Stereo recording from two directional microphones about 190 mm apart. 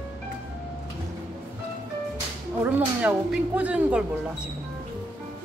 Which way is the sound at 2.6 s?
5° right (ahead or behind).